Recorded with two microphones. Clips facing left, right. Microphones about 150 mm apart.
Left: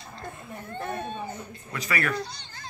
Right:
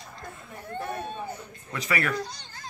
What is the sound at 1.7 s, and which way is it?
Speech, 25° right (ahead or behind).